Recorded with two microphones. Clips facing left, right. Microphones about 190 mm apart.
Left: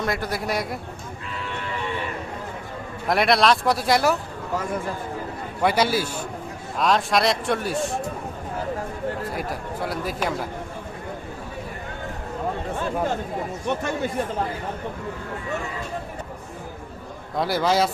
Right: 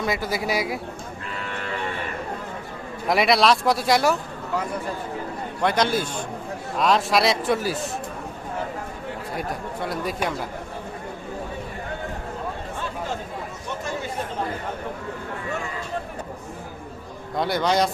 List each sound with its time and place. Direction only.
0.0 s speech: centre (ahead or behind)
3.1 s speech: centre (ahead or behind)
5.6 s a man's voice: 5° left (ahead or behind)
9.3 s speech: centre (ahead or behind)
13.7 s speech: 65° left (ahead or behind)
17.3 s speech: centre (ahead or behind)